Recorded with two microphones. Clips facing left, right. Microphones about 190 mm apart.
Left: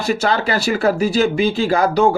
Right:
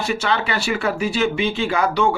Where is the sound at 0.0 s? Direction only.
40° left (ahead or behind).